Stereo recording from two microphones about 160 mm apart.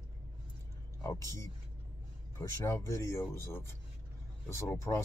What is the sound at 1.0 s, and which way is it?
Speech, 20° left (ahead or behind).